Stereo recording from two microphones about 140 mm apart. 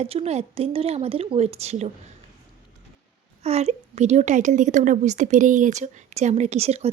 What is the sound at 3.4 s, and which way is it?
A woman's voice, 50° right (ahead or behind).